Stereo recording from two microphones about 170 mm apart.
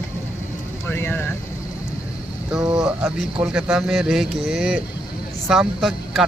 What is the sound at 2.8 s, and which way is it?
Speech, 5° right (ahead or behind).